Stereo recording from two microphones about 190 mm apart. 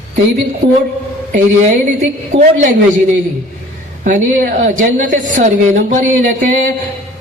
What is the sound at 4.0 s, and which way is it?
A woman's voice, 45° right (ahead or behind).